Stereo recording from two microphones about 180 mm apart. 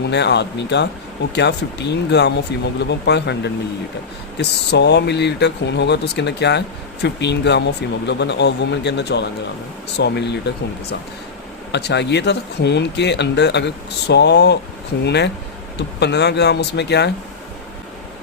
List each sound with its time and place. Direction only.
0.1 s speech: 70° left (ahead or behind)